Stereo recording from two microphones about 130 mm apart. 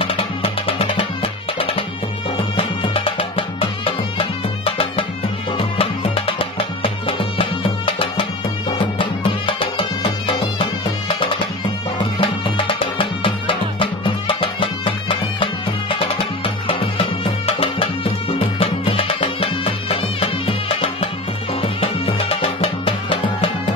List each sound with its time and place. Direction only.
0.0 s music: 45° left (ahead or behind)
12.0 s music: 40° left (ahead or behind)